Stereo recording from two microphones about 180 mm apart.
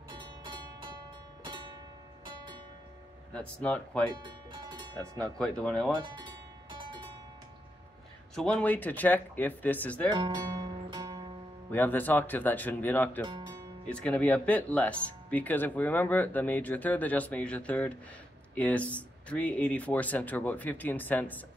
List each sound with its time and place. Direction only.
0.1 s music: 25° right (ahead or behind)
3.3 s speech: 5° left (ahead or behind)
4.2 s music: 25° right (ahead or behind)
5.2 s speech: 5° left (ahead or behind)
5.9 s speech: 25° right (ahead or behind)
8.4 s speech: 5° left (ahead or behind)
10.0 s music: 25° right (ahead or behind)
11.7 s speech: 10° left (ahead or behind)